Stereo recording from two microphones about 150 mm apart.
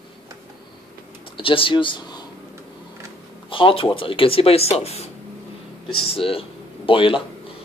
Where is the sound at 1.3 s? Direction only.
35° left (ahead or behind).